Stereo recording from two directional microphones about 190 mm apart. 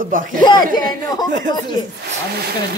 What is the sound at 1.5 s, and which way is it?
Speech, 20° left (ahead or behind).